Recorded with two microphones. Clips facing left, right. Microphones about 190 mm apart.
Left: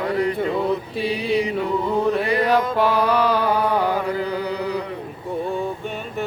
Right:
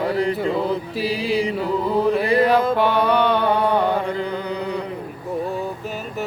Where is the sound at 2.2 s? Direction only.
30° right (ahead or behind).